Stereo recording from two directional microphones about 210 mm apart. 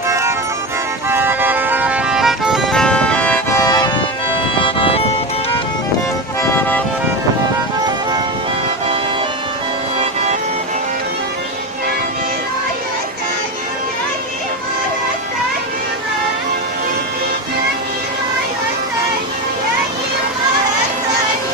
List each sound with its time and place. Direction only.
1.0 s music: 10° right (ahead or behind); by 5.0 s 25° left (ahead or behind)